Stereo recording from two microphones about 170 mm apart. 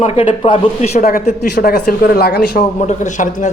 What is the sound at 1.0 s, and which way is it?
Speech, 55° left (ahead or behind).